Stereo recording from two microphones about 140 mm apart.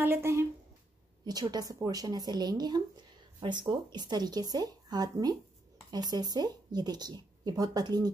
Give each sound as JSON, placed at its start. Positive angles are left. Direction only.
{"t": 0.0, "sound": "speech", "side_deg": -15}
{"t": 1.2, "sound": "speech", "side_deg": -30}